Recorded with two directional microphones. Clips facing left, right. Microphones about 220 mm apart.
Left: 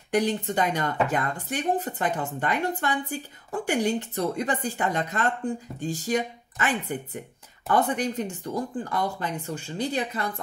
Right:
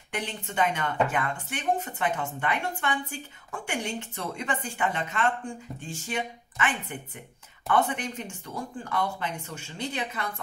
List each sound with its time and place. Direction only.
0.1 s speech: 40° left (ahead or behind)